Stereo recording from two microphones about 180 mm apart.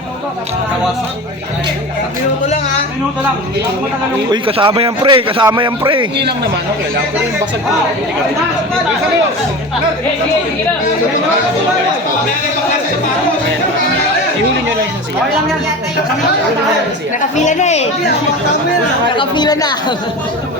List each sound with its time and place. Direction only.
4.3 s a man's voice: 30° right (ahead or behind)
17.2 s a woman's voice: 45° left (ahead or behind)
19.1 s speech: 25° left (ahead or behind)